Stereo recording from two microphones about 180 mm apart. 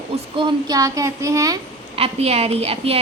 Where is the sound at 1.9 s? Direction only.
35° right (ahead or behind).